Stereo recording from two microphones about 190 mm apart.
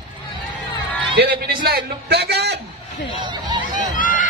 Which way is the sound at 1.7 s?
60° right (ahead or behind).